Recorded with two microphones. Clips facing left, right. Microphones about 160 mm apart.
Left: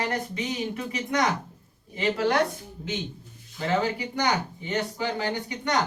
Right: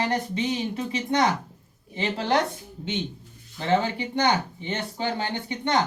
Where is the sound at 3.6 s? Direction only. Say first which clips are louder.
Right 2 dB; 25° right (ahead or behind).